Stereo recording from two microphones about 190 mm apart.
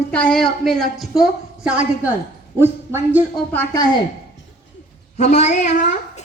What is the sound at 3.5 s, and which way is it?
Speech, 20° left (ahead or behind).